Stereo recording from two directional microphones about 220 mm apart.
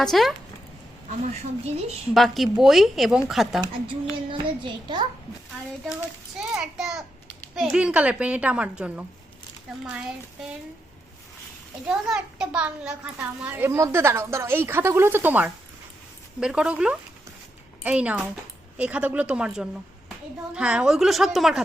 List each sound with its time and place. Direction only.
0.0 s a woman's voice: centre (ahead or behind)
1.2 s a woman's voice: 30° right (ahead or behind)
2.1 s a woman's voice: centre (ahead or behind)
4.3 s a child's voice: 20° right (ahead or behind)
6.5 s a woman's voice: 5° right (ahead or behind)
11.9 s a child's voice: 5° right (ahead or behind)